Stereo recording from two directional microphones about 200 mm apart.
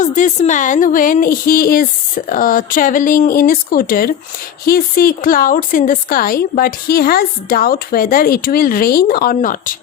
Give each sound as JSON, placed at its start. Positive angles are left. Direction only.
{"t": 0.0, "sound": "a woman's voice", "side_deg": 40}